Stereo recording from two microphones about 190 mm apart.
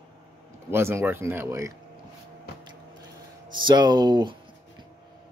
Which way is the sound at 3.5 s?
25° right (ahead or behind).